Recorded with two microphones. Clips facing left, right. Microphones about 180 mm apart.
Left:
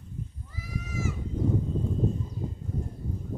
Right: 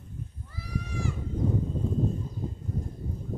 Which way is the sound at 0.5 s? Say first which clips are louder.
Even; 10° left (ahead or behind).